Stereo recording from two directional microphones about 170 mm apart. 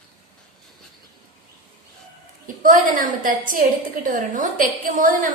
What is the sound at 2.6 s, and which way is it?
A woman's voice, 50° right (ahead or behind).